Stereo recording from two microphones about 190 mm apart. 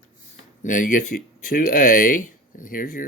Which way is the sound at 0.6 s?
45° left (ahead or behind).